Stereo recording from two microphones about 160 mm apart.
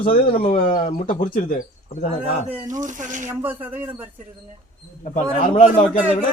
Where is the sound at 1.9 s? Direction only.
40° left (ahead or behind).